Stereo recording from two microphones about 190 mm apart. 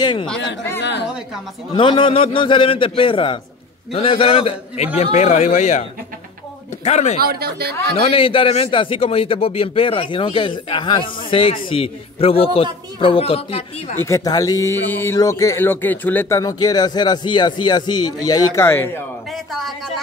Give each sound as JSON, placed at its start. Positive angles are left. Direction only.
{"t": 0.0, "sound": "a man's voice", "side_deg": 25}
{"t": 0.7, "sound": "a woman's voice", "side_deg": 65}
{"t": 1.7, "sound": "a man's voice", "side_deg": 25}
{"t": 7.2, "sound": "speech", "side_deg": -55}
{"t": 8.1, "sound": "a man's voice", "side_deg": 30}
{"t": 13.9, "sound": "speech", "side_deg": 15}
{"t": 19.3, "sound": "a man's voice", "side_deg": 0}